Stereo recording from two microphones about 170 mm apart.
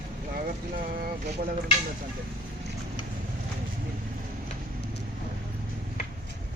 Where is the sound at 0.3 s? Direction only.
55° right (ahead or behind).